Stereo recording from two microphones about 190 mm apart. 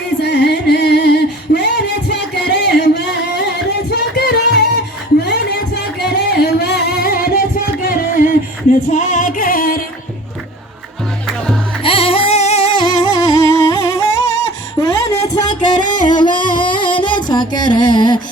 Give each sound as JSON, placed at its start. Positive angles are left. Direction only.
{"t": 0.2, "sound": "music", "side_deg": 60}
{"t": 5.2, "sound": "a sound", "side_deg": 60}
{"t": 6.1, "sound": "music", "side_deg": 60}
{"t": 11.8, "sound": "music", "side_deg": 30}